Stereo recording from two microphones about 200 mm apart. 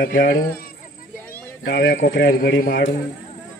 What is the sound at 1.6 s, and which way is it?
A man's voice, 55° left (ahead or behind).